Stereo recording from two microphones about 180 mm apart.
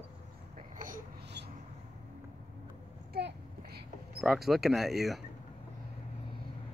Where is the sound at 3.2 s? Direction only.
65° right (ahead or behind).